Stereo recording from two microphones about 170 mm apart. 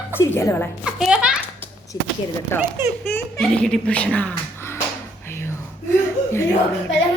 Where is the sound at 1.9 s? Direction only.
20° left (ahead or behind).